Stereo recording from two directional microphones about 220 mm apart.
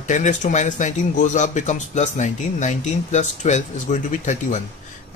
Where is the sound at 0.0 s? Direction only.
35° left (ahead or behind).